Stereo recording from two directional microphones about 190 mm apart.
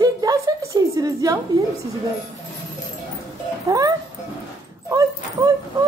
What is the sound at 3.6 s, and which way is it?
Speech, 20° right (ahead or behind).